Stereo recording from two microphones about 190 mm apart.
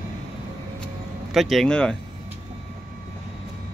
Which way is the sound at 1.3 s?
Centre (ahead or behind).